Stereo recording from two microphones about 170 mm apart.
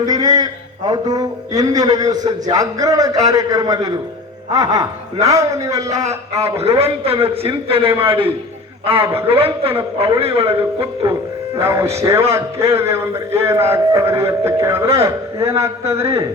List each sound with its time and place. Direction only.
0.0 s speech: 20° right (ahead or behind)
5.9 s a man's voice: 45° right (ahead or behind)
11.5 s a man's voice: 15° right (ahead or behind)